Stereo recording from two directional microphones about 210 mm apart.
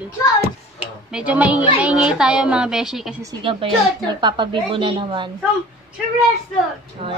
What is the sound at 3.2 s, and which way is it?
A woman's voice, 20° right (ahead or behind).